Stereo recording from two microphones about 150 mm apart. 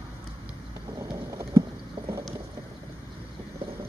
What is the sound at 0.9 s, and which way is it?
Bird, 20° right (ahead or behind).